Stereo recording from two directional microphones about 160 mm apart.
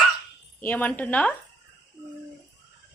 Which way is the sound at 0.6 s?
10° left (ahead or behind).